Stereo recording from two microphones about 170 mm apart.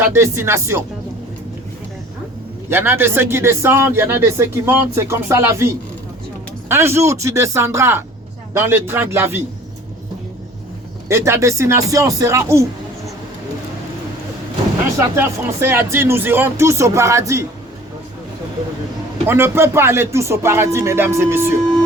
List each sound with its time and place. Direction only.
0.0 s speech: 15° right (ahead or behind)
2.6 s speech: 15° right (ahead or behind)
11.1 s speech: 15° right (ahead or behind)
14.9 s speech: 15° right (ahead or behind)
19.3 s speech: 15° right (ahead or behind)